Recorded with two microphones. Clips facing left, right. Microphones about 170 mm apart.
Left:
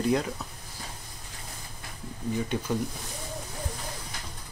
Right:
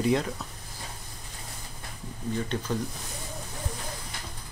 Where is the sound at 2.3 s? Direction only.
10° left (ahead or behind).